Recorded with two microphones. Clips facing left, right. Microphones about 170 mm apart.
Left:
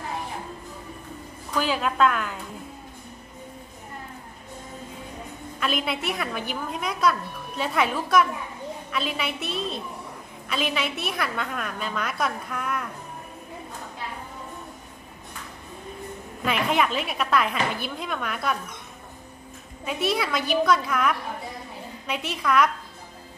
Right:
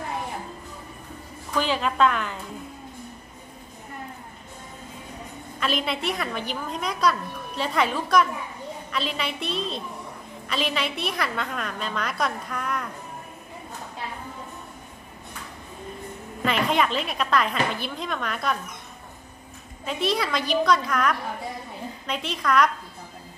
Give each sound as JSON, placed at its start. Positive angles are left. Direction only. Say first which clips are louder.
{"t": 1.6, "sound": "a woman's voice", "louder": "even", "side_deg": 5}
{"t": 5.6, "sound": "a woman's voice", "louder": "right 1 dB", "side_deg": 5}
{"t": 10.5, "sound": "a woman's voice", "louder": "even", "side_deg": 0}
{"t": 16.4, "sound": "a woman's voice", "louder": "right 1 dB", "side_deg": 5}
{"t": 19.8, "sound": "a woman's voice", "louder": "even", "side_deg": 5}
{"t": 22.3, "sound": "a woman's voice", "louder": "even", "side_deg": 5}